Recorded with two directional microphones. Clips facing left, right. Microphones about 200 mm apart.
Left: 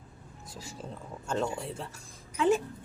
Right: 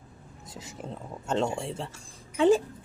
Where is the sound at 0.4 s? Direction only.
20° right (ahead or behind).